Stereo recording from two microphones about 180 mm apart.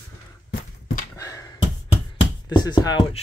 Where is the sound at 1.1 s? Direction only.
20° left (ahead or behind).